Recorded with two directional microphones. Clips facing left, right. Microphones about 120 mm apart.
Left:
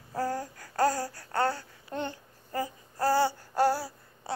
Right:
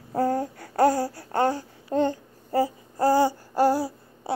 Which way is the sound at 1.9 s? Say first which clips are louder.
Right 11 dB; 35° right (ahead or behind).